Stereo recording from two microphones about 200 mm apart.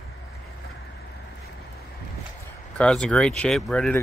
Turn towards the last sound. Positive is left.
turn(degrees=5)  # may be behind; listen again after turning